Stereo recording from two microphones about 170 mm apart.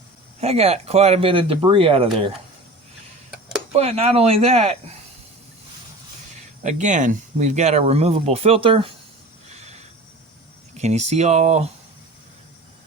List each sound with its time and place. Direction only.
0.3 s speech: 40° right (ahead or behind)
3.7 s speech: 35° right (ahead or behind)
6.6 s speech: 45° right (ahead or behind)
10.8 s speech: 40° right (ahead or behind)